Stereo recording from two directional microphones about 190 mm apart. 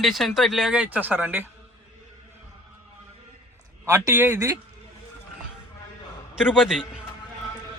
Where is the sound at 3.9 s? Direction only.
15° right (ahead or behind).